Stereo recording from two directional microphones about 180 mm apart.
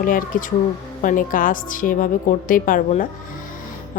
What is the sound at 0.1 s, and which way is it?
Speech, 50° left (ahead or behind).